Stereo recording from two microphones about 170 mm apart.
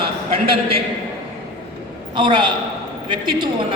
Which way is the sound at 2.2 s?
30° right (ahead or behind).